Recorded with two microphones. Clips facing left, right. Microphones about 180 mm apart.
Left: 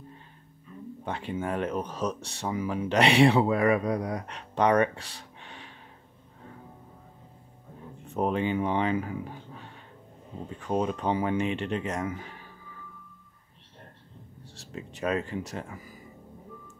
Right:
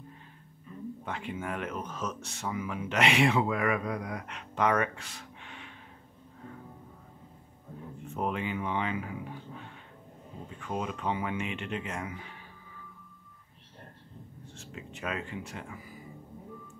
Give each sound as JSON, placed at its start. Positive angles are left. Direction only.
{"t": 1.0, "sound": "speech", "side_deg": 30}
{"t": 8.1, "sound": "speech", "side_deg": 35}
{"t": 10.6, "sound": "speech", "side_deg": 35}
{"t": 14.5, "sound": "speech", "side_deg": 35}